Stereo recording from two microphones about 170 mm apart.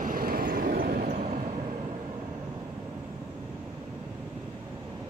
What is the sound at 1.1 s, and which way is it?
Vehicle, 40° right (ahead or behind).